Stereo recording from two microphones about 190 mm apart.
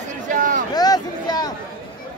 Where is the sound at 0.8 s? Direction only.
20° left (ahead or behind).